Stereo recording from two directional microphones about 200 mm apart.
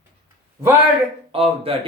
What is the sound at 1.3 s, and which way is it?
Speech, 30° right (ahead or behind).